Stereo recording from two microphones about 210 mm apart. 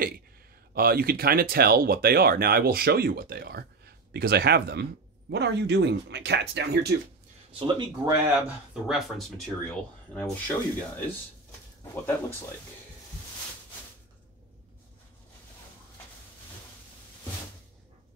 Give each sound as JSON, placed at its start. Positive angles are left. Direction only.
{"t": 0.7, "sound": "speech", "side_deg": -45}
{"t": 7.5, "sound": "speech", "side_deg": -20}
{"t": 8.5, "sound": "speech", "side_deg": -5}